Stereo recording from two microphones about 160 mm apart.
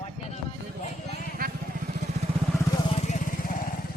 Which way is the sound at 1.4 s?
65° right (ahead or behind).